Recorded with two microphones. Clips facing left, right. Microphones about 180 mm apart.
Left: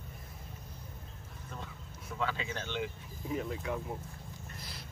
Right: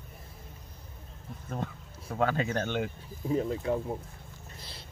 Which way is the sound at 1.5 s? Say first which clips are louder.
Right 10 dB; 50° right (ahead or behind).